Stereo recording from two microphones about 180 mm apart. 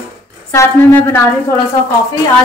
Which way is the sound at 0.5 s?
10° left (ahead or behind).